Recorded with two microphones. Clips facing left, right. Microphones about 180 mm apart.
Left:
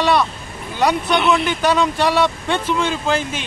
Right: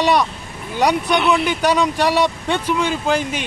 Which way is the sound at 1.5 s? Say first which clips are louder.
Even; 15° right (ahead or behind).